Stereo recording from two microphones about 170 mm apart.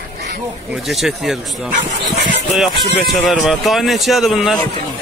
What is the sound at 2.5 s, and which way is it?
Speech, centre (ahead or behind).